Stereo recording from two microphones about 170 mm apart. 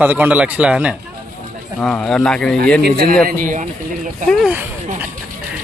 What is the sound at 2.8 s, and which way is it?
Speech, 65° right (ahead or behind).